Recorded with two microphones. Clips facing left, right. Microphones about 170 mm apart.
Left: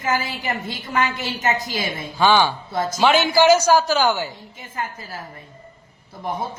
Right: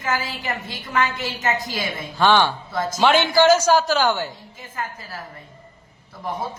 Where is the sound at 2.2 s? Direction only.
5° left (ahead or behind).